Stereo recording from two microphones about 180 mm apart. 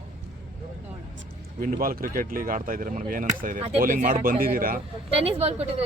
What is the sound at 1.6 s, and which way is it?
Speech, 55° right (ahead or behind).